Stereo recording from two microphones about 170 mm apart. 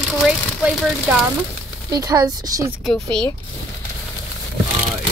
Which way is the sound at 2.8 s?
5° left (ahead or behind).